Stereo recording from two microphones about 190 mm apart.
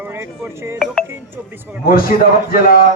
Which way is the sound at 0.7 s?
Centre (ahead or behind).